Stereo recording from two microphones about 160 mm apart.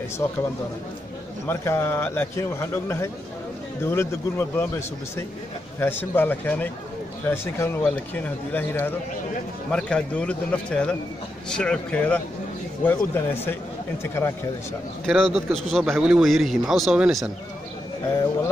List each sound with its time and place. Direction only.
0.2 s speech: 15° left (ahead or behind)
1.5 s a man's voice: 15° left (ahead or behind)
15.0 s a man's voice: centre (ahead or behind)